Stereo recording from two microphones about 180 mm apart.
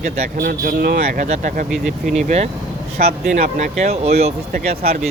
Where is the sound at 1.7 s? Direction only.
Centre (ahead or behind).